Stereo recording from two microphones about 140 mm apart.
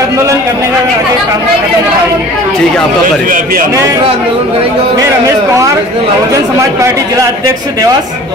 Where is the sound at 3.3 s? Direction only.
90° right.